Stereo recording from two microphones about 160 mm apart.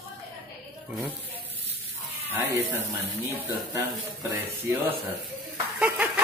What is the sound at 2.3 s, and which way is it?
Speech, 15° right (ahead or behind).